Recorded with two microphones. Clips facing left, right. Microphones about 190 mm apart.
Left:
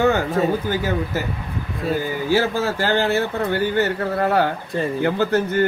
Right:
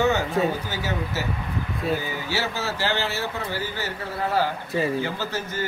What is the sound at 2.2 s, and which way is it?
Speech, 50° left (ahead or behind).